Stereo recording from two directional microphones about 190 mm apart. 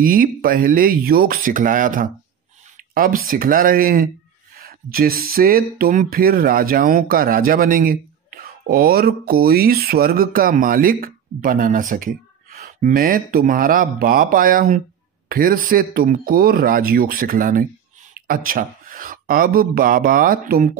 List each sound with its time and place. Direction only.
0.0 s a man's voice: 45° right (ahead or behind)